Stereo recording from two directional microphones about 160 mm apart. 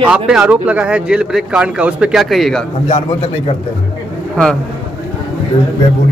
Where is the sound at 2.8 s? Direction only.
45° left (ahead or behind).